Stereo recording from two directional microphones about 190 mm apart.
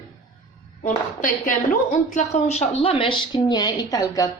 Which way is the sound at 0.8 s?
45° left (ahead or behind).